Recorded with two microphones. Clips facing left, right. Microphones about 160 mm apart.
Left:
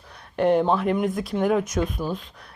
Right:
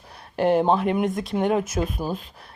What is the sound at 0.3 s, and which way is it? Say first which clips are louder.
Speech: even; 5° right (ahead or behind).